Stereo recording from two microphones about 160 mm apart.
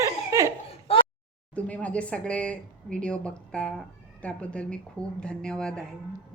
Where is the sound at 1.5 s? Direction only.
10° left (ahead or behind).